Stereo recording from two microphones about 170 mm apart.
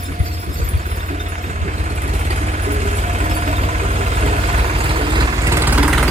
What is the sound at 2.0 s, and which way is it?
Vehicle, 45° right (ahead or behind).